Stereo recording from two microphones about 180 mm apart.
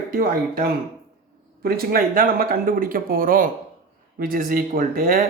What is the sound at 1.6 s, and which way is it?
Speech, 55° right (ahead or behind).